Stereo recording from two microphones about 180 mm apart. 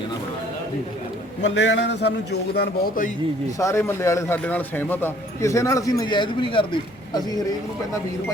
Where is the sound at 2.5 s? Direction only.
55° left (ahead or behind).